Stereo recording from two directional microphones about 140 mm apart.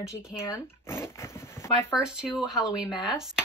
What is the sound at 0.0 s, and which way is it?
Speech, 25° left (ahead or behind).